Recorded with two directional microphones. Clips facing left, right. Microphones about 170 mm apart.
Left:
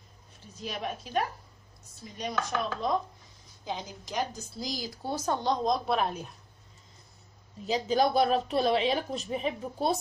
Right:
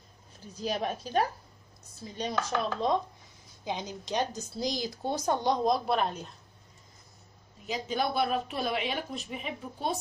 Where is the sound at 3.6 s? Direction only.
20° right (ahead or behind).